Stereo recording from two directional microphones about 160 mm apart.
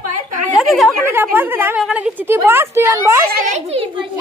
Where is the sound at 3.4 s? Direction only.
40° right (ahead or behind).